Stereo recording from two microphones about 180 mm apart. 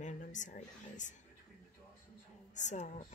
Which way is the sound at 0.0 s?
45° left (ahead or behind).